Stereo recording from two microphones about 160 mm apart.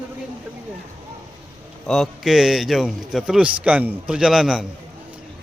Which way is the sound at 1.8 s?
Centre (ahead or behind).